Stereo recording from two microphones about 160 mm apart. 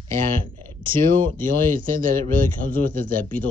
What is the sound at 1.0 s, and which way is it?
Speech, 60° right (ahead or behind).